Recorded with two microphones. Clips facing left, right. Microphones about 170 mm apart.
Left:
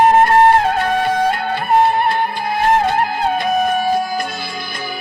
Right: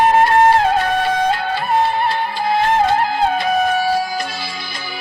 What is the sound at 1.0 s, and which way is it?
Music, 55° left (ahead or behind).